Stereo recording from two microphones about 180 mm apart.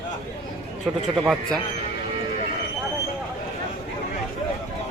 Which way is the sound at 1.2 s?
5° right (ahead or behind).